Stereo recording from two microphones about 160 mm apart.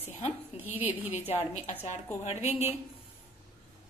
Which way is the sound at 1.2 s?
40° left (ahead or behind).